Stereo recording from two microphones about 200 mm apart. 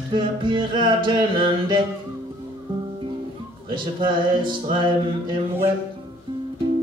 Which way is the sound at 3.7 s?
25° right (ahead or behind).